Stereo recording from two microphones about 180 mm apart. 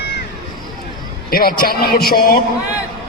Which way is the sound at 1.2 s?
55° left (ahead or behind).